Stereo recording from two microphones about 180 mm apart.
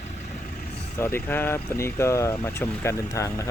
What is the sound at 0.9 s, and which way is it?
Speech, 15° left (ahead or behind).